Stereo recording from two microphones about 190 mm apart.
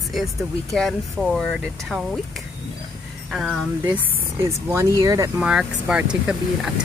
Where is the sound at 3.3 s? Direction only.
Centre (ahead or behind).